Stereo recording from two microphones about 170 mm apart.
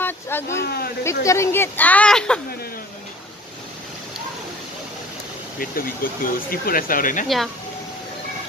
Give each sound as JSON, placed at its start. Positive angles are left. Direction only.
{"t": 0.0, "sound": "a sound", "side_deg": 10}
{"t": 0.6, "sound": "speech", "side_deg": 70}
{"t": 1.2, "sound": "a woman's voice", "side_deg": 15}
{"t": 5.6, "sound": "speech", "side_deg": 60}